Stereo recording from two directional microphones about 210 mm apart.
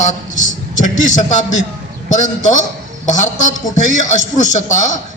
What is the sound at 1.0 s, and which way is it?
A man's voice, 35° left (ahead or behind).